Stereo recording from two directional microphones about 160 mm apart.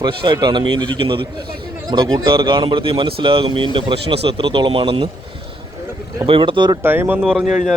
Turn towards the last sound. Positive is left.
turn(degrees=-5)  # may be behind; listen again after turning